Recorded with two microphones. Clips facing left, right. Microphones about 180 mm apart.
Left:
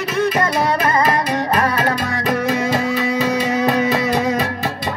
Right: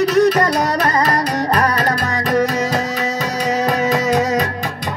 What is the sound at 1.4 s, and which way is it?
Music, 40° right (ahead or behind).